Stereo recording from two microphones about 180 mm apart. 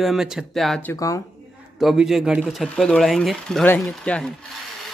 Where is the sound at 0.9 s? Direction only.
20° left (ahead or behind).